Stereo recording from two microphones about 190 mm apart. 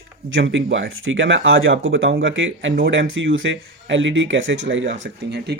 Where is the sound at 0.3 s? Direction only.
85° right.